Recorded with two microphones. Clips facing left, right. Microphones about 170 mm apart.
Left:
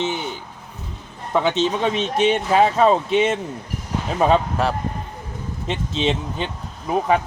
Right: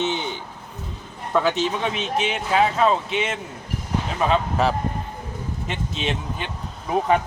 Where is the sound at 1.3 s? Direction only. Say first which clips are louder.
Left 2 dB; 20° left (ahead or behind); by 3.3 s 35° left (ahead or behind).